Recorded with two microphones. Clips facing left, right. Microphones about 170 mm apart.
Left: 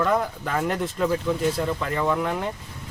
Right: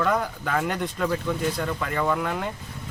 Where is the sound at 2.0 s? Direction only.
Centre (ahead or behind).